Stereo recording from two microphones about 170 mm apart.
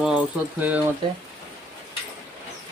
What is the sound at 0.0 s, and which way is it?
Speech, 5° right (ahead or behind).